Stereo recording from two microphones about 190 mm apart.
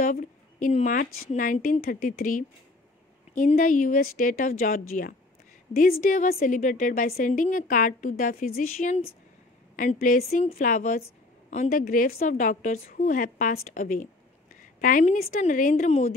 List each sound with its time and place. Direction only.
0.0 s a woman's voice: 45° left (ahead or behind)